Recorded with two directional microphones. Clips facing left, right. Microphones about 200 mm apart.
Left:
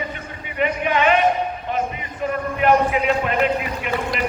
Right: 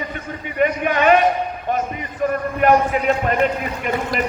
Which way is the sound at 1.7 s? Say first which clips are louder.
Right 3 dB; 45° right (ahead or behind).